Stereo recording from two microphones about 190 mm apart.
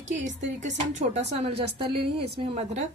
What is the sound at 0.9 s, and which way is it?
Speech, 35° right (ahead or behind).